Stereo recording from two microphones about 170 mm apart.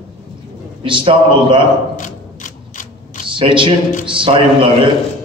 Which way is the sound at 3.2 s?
30° right (ahead or behind).